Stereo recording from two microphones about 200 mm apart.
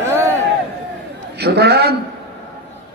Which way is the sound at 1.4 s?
55° right (ahead or behind).